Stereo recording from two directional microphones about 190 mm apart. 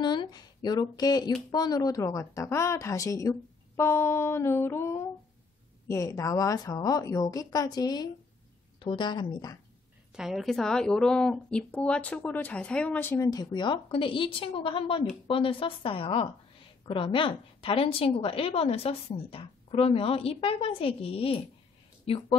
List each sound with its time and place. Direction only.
0.0 s a woman's voice: 25° left (ahead or behind)
10.1 s a woman's voice: centre (ahead or behind); by 22.4 s 30° left (ahead or behind)